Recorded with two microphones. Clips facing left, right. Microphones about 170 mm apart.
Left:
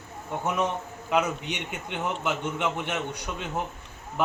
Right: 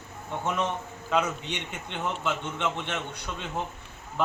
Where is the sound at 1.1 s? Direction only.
10° left (ahead or behind).